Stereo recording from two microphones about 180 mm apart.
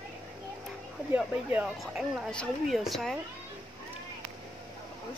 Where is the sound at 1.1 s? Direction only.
10° right (ahead or behind).